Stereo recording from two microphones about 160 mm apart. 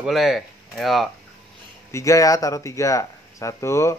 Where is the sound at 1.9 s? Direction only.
20° left (ahead or behind).